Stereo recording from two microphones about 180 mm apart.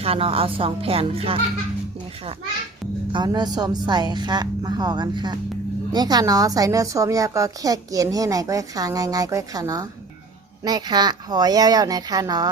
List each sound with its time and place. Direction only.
0.0 s a woman's voice: 30° right (ahead or behind)
3.1 s a woman's voice: 25° right (ahead or behind)